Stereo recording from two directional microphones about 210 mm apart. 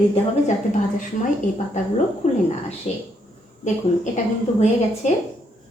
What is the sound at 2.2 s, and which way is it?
A woman's voice, 35° left (ahead or behind).